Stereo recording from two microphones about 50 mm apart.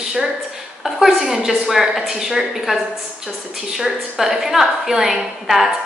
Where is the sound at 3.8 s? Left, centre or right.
Centre.